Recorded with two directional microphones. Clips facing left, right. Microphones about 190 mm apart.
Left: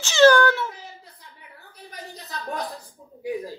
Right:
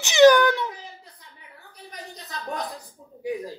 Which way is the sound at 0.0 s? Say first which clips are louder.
Right 1 dB; 15° right (ahead or behind).